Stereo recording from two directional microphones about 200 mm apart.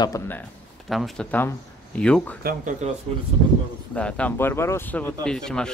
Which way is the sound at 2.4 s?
40° right (ahead or behind).